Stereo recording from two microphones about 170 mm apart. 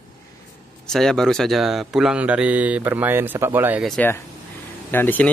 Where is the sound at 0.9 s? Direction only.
Centre (ahead or behind).